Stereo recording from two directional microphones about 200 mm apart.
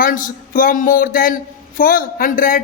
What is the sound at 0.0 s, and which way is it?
A man's voice, 45° left (ahead or behind).